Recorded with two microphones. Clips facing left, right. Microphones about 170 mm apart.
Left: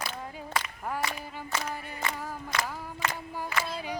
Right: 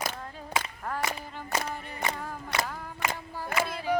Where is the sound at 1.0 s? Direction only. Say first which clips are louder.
Right 1 dB; 45° right (ahead or behind).